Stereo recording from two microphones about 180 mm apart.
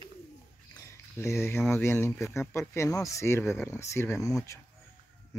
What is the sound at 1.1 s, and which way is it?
Speech, 15° left (ahead or behind).